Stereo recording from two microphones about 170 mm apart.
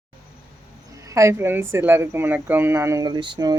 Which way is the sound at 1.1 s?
15° right (ahead or behind).